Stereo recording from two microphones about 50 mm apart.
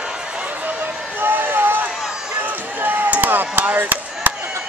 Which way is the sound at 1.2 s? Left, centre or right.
Right.